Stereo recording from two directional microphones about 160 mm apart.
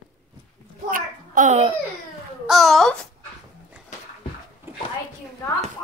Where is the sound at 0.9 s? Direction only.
50° right (ahead or behind).